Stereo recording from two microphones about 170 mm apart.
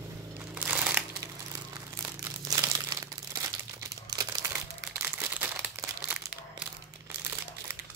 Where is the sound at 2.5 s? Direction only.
20° right (ahead or behind).